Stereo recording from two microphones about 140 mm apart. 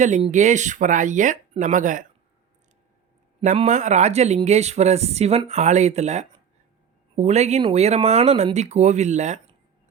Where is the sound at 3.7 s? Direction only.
60° right (ahead or behind).